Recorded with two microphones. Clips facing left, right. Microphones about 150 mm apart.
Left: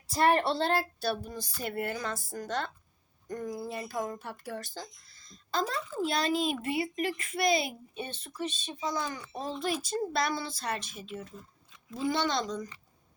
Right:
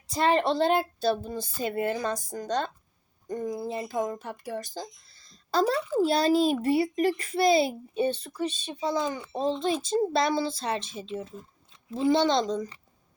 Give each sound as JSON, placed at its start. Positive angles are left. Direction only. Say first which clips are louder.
{"t": 0.1, "sound": "a child's voice", "louder": "right 2 dB", "side_deg": -20}
{"t": 5.0, "sound": "a sound", "louder": "left 3 dB", "side_deg": -30}
{"t": 6.0, "sound": "a child's voice", "louder": "right 6 dB", "side_deg": -35}